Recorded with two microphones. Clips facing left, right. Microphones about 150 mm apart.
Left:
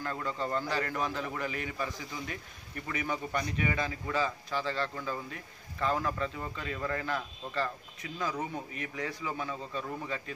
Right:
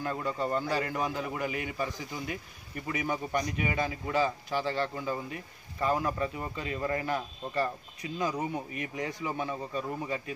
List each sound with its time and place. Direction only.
0.0 s a man's voice: 15° right (ahead or behind)